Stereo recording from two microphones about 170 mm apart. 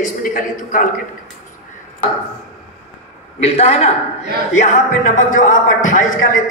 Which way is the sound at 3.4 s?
40° left (ahead or behind).